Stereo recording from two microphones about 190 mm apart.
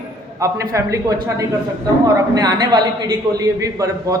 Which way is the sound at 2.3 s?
20° right (ahead or behind).